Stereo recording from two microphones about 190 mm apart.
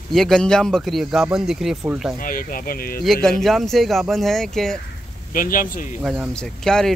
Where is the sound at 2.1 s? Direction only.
45° left (ahead or behind).